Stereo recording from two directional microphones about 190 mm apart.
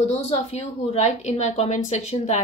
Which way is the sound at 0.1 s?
35° left (ahead or behind).